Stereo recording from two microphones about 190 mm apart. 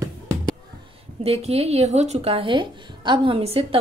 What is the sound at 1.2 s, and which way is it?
Speech, 30° right (ahead or behind).